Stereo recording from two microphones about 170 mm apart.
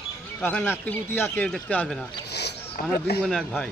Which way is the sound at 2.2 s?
80° left.